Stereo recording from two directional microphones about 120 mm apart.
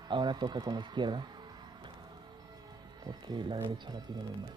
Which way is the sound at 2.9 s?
35° right (ahead or behind).